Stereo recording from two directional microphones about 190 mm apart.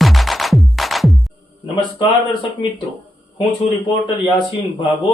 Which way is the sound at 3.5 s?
25° left (ahead or behind).